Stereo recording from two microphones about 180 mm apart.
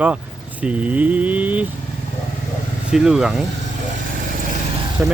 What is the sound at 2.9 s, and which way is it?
Speech, 5° right (ahead or behind).